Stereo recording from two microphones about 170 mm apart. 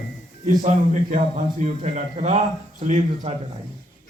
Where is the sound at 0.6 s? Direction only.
45° right (ahead or behind).